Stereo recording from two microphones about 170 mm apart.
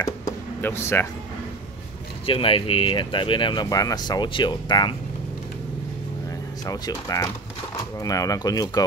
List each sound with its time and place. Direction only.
0.0 s a sound: 15° left (ahead or behind)
2.2 s speech: 30° left (ahead or behind)
6.6 s speech: 20° left (ahead or behind)